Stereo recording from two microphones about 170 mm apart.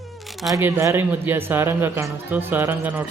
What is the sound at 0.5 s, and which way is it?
Speech, 15° right (ahead or behind).